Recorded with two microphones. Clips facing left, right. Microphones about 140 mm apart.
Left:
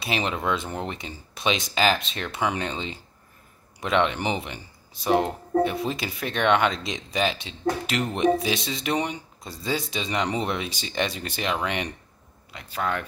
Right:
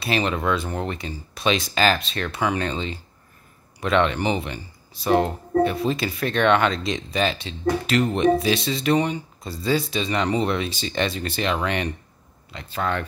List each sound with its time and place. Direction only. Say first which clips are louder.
0.0 s speech: right 4 dB; 15° left (ahead or behind)